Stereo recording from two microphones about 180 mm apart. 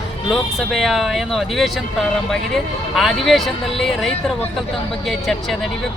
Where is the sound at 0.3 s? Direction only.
Centre (ahead or behind).